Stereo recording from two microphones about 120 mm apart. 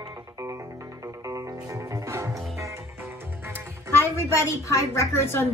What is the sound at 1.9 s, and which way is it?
Music, 25° right (ahead or behind).